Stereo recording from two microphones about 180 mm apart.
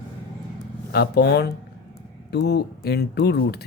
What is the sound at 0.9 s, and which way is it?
Speech, 65° left (ahead or behind).